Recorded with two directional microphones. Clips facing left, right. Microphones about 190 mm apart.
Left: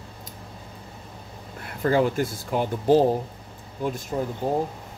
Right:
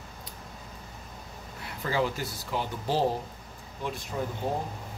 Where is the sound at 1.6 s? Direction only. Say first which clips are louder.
Left 7 dB; 50° left (ahead or behind).